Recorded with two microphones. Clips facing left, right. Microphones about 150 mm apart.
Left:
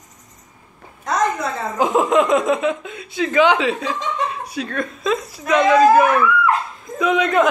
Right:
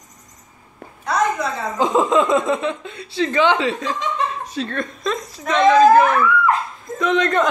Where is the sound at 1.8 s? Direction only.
10° left (ahead or behind).